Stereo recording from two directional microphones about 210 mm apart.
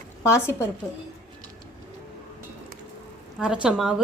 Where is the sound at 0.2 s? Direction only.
15° left (ahead or behind).